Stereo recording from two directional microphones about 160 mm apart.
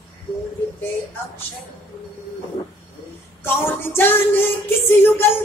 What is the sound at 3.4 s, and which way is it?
Music, 15° left (ahead or behind).